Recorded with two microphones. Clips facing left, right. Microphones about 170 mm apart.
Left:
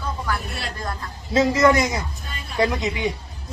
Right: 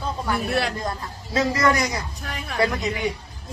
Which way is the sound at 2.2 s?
90° right.